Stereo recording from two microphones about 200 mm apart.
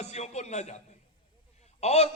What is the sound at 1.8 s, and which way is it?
Speech, 30° left (ahead or behind).